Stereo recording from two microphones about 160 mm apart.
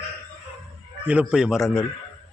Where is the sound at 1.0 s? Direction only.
5° right (ahead or behind).